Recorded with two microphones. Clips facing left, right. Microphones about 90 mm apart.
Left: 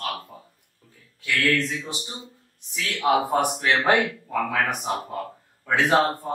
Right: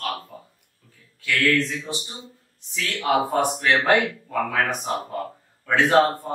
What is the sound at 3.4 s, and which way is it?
Speech, 15° left (ahead or behind).